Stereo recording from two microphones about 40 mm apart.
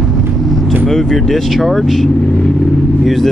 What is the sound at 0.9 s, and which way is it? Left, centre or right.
Speech, centre.